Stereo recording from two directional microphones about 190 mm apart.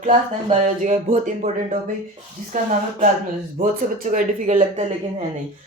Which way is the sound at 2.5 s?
40° right (ahead or behind).